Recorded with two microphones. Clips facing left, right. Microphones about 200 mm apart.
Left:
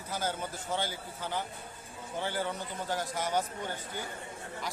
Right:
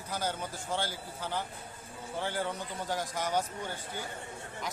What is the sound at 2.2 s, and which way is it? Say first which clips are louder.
Speech: even; 10° left (ahead or behind).